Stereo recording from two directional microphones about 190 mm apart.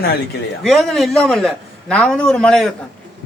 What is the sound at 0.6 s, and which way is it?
A man's voice, centre (ahead or behind).